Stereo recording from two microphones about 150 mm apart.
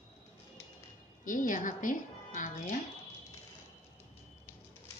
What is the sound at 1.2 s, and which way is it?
A woman's voice, 60° left (ahead or behind).